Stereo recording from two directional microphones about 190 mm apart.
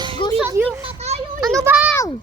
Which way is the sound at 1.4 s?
15° right (ahead or behind).